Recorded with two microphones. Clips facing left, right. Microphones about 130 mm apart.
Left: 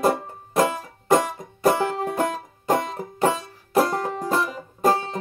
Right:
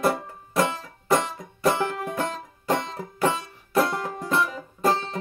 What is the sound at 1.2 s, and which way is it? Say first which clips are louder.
Music: left 3 dB; 50° left (ahead or behind).